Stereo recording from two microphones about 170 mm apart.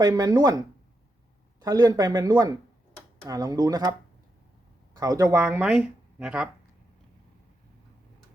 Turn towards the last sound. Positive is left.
turn(degrees=-5)  # may be behind; listen again after turning